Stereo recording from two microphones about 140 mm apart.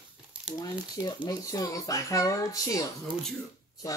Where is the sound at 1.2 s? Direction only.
25° left (ahead or behind).